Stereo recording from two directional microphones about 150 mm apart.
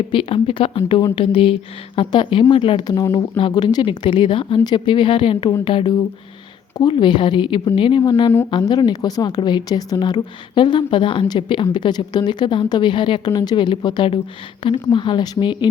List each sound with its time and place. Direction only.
0.1 s a woman's voice: 35° left (ahead or behind)